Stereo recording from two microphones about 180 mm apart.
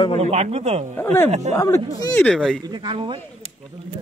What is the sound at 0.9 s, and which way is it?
Speech, 10° left (ahead or behind).